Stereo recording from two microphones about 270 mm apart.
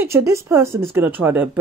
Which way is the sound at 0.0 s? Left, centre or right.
Centre.